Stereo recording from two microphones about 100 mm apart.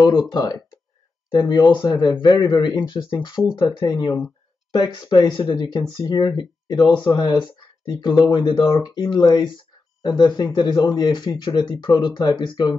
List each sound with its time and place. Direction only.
0.0 s speech: 45° left (ahead or behind)